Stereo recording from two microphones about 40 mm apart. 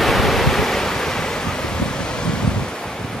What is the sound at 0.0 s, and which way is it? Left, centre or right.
Waves, centre.